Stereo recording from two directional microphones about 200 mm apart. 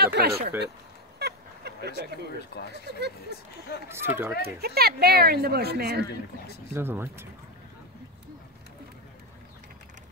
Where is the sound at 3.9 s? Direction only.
10° right (ahead or behind).